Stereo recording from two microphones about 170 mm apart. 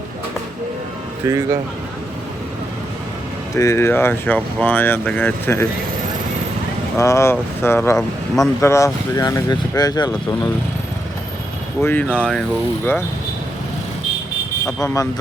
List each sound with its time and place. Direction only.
1.2 s speech: 15° right (ahead or behind)
3.5 s speech: 15° left (ahead or behind)
6.9 s speech: 20° left (ahead or behind)
11.8 s speech: 10° left (ahead or behind)
14.8 s speech: 20° left (ahead or behind)